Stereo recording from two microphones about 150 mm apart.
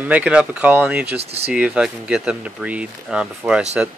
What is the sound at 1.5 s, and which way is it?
Speech, 10° right (ahead or behind).